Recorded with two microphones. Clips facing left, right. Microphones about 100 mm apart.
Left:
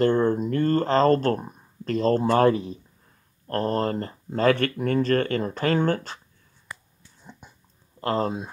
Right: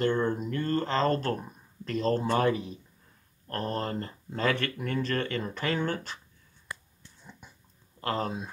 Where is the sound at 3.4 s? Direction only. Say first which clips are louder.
Left 7 dB; 40° left (ahead or behind).